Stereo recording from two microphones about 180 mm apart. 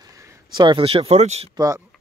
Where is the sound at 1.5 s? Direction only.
20° right (ahead or behind).